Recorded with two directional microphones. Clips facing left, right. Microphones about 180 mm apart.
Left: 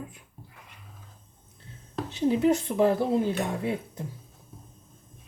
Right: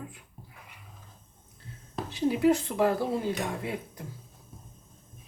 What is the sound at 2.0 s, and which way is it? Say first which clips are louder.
Speech: left 1 dB; 20° left (ahead or behind).